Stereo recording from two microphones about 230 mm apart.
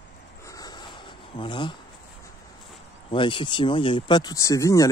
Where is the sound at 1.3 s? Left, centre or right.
Centre.